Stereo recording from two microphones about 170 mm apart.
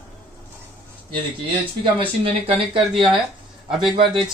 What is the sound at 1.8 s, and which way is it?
Speech, 30° right (ahead or behind).